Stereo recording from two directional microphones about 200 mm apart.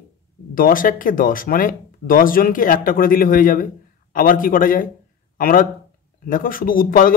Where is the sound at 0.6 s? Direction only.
45° left (ahead or behind).